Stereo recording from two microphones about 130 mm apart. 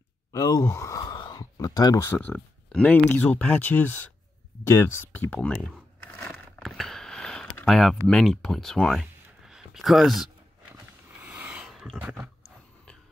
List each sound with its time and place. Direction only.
0.3 s speech: 25° left (ahead or behind)
2.0 s speech: 10° left (ahead or behind)
4.6 s crumpling: 20° left (ahead or behind)
7.6 s speech: centre (ahead or behind)
10.7 s a sound: 10° right (ahead or behind)